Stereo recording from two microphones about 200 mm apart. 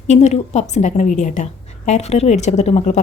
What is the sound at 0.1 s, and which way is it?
A woman's voice, 35° left (ahead or behind).